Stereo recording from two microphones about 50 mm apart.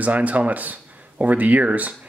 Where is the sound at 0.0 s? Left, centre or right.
Right.